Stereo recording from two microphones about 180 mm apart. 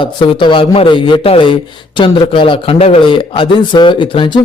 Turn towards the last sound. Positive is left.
turn(degrees=25)  # may be behind; listen again after turning